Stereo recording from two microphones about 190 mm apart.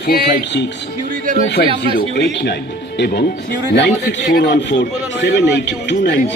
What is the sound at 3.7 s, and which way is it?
A man's voice, 60° left (ahead or behind).